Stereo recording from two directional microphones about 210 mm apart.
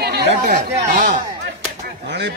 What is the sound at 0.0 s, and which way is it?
Chatter, 50° right (ahead or behind).